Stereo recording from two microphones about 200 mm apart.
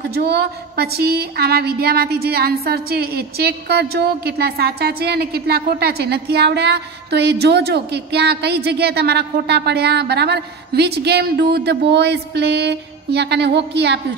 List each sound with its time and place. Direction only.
0.1 s a woman's voice: 55° right (ahead or behind)